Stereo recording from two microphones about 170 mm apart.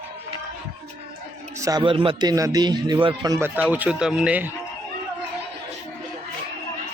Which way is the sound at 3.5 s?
10° right (ahead or behind).